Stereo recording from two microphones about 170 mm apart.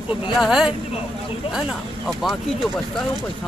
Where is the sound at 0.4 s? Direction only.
5° right (ahead or behind).